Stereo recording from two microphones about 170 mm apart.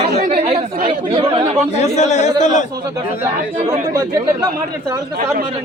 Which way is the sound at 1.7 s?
40° left (ahead or behind).